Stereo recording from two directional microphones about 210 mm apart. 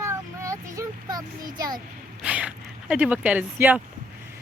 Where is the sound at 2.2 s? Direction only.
5° right (ahead or behind).